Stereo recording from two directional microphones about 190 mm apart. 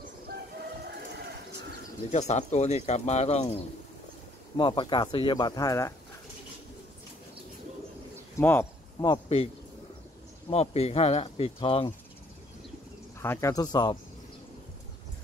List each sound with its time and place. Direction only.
2.0 s speech: 35° left (ahead or behind); by 5.9 s 15° left (ahead or behind)
8.4 s speech: 10° left (ahead or behind)
9.0 s speech: 25° left (ahead or behind)
10.5 s speech: 35° left (ahead or behind)
13.2 s speech: 15° left (ahead or behind)